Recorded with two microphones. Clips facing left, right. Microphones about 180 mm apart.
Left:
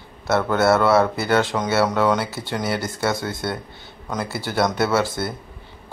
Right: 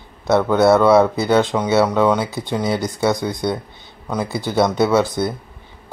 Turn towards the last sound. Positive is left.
turn(degrees=-20)  # may be behind; listen again after turning